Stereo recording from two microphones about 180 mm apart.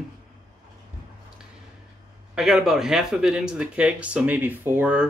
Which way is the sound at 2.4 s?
Centre (ahead or behind).